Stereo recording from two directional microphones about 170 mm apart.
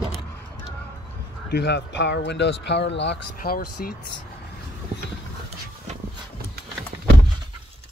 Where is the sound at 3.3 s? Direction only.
60° left (ahead or behind).